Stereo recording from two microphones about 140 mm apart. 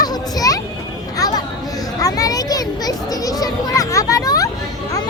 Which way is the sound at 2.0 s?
25° left (ahead or behind).